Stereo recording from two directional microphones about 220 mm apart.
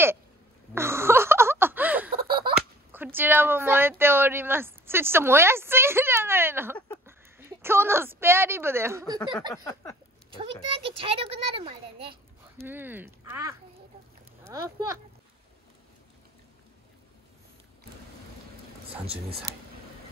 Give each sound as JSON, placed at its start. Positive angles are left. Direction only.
{"t": 0.7, "sound": "a sound", "side_deg": -10}
{"t": 2.1, "sound": "slap", "side_deg": -25}
{"t": 2.9, "sound": "a woman's voice", "side_deg": -10}
{"t": 9.5, "sound": "a sound", "side_deg": 15}
{"t": 10.7, "sound": "a child's voice", "side_deg": -25}
{"t": 12.6, "sound": "speech", "side_deg": -10}
{"t": 19.5, "sound": "speech", "side_deg": -10}